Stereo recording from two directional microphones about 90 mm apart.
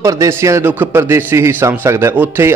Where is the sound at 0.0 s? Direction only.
35° right (ahead or behind).